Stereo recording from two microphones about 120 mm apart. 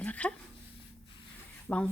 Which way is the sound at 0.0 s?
10° left (ahead or behind).